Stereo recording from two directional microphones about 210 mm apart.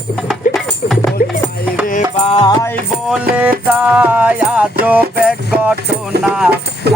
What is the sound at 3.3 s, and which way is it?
Music, 5° right (ahead or behind).